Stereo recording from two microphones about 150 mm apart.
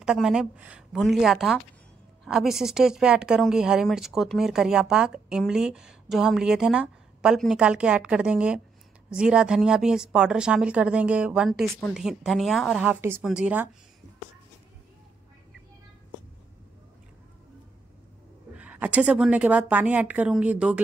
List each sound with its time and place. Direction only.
0.0 s speech: 5° right (ahead or behind)
12.9 s a woman's voice: 15° right (ahead or behind)
13.2 s speech: 5° right (ahead or behind)
18.6 s a woman's voice: 10° right (ahead or behind)